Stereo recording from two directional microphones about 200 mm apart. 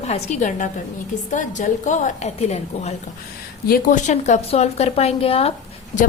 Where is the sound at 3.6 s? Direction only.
45° left (ahead or behind).